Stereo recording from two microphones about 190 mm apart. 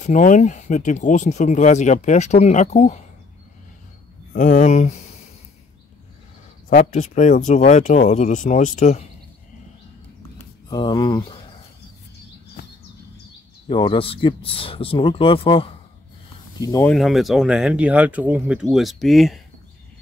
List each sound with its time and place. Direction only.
0.0 s speech: 40° left (ahead or behind)
4.3 s speech: 45° left (ahead or behind)
6.7 s speech: 40° left (ahead or behind)
10.7 s speech: 20° left (ahead or behind)
13.7 s speech: 30° left (ahead or behind)
16.6 s speech: 15° left (ahead or behind)
16.9 s speech: centre (ahead or behind)